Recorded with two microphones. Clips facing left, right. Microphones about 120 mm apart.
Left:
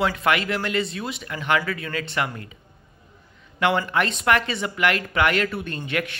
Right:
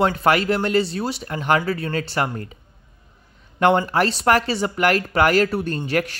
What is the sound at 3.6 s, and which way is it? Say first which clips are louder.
Speech: right 5 dB; 35° right (ahead or behind).